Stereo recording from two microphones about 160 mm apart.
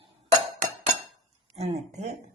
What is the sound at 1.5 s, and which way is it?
Speech, 45° right (ahead or behind).